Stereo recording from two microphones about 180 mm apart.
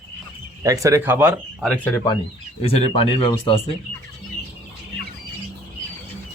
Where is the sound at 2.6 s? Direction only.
35° left (ahead or behind).